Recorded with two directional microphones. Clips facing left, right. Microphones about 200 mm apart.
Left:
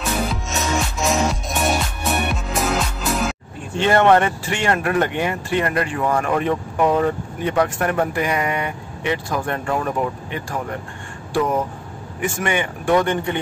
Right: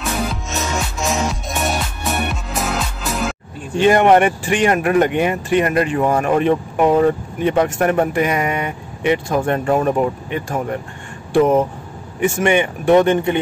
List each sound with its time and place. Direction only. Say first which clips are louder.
0.3 s music: even; centre (ahead or behind)
3.7 s speech: right 3 dB; 15° right (ahead or behind)